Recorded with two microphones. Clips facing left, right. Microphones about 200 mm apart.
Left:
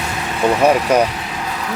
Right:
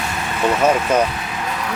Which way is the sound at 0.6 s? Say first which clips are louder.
Left 3 dB; 15° left (ahead or behind).